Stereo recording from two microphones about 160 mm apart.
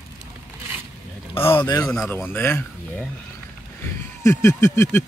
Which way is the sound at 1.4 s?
15° left (ahead or behind).